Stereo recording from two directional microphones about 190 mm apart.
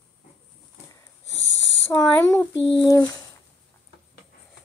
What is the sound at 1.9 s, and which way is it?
Speech, 15° left (ahead or behind).